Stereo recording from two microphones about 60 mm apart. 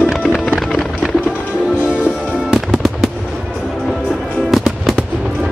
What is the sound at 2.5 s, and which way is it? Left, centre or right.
Fireworks, centre.